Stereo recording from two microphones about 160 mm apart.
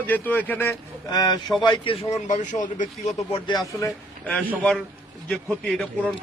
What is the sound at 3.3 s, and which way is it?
Speech, 25° left (ahead or behind).